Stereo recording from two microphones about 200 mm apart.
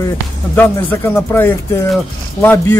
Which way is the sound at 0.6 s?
10° left (ahead or behind).